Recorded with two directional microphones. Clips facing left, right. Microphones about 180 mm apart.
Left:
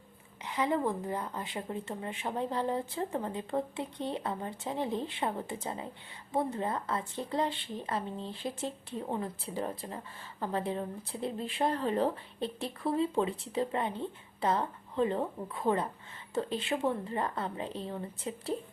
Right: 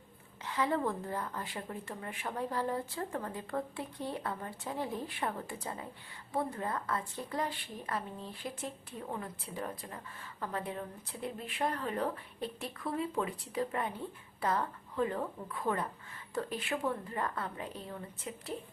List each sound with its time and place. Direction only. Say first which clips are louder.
0.4 s speech: left 2 dB; 20° left (ahead or behind)